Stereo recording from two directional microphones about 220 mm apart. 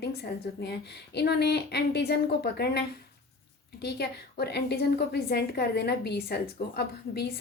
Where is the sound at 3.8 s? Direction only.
45° left (ahead or behind).